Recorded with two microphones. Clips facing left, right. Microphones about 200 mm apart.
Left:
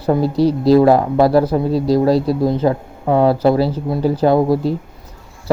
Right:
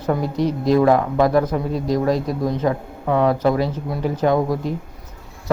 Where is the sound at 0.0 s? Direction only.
30° left (ahead or behind).